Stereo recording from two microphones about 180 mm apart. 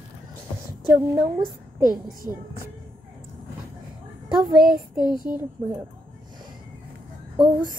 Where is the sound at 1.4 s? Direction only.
50° right (ahead or behind).